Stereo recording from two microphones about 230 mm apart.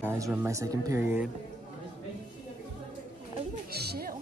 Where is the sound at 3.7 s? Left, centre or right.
Right.